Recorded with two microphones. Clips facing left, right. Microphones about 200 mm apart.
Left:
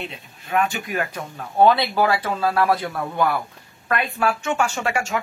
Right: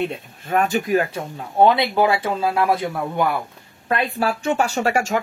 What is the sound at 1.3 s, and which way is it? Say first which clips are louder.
Speech: even; 20° right (ahead or behind).